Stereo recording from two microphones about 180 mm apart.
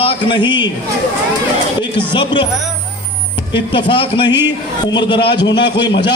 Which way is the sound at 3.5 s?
30° left (ahead or behind).